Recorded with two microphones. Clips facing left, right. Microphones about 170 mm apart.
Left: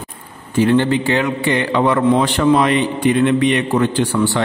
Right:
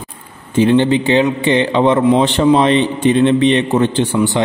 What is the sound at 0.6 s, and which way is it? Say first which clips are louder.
A man's voice: right 2 dB; 20° right (ahead or behind).